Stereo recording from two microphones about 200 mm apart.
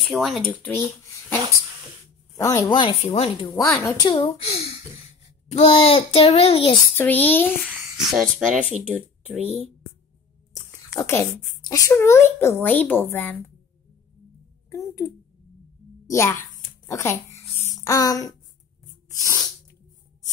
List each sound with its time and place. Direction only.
0.0 s speech: centre (ahead or behind); by 4.3 s 20° left (ahead or behind)
4.3 s a child's voice: 30° left (ahead or behind)
7.0 s speech: 10° left (ahead or behind)
11.0 s speech: 15° left (ahead or behind)
14.7 s a woman's voice: 15° left (ahead or behind)
16.1 s speech: 15° left (ahead or behind)
16.8 s a sound: 15° left (ahead or behind)
19.0 s sneeze: 15° left (ahead or behind)